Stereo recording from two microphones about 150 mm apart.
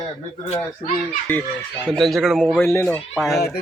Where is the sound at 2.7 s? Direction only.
15° left (ahead or behind).